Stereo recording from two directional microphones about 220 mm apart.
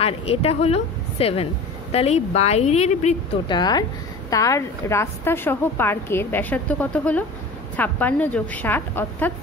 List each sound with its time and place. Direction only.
0.0 s a woman's voice: 25° left (ahead or behind)
3.5 s a woman's voice: 20° left (ahead or behind)